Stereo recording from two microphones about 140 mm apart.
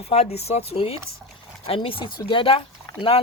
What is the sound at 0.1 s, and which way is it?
Speech, 50° left (ahead or behind).